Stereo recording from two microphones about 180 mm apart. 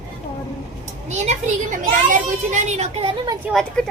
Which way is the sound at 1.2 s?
45° right (ahead or behind).